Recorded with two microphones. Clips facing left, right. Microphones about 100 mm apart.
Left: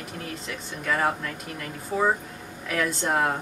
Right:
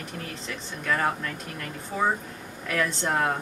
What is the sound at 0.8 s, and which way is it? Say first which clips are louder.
Speech: left 1 dB; 5° left (ahead or behind).